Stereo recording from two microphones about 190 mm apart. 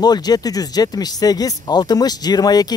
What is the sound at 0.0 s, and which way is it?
Speech, 20° left (ahead or behind).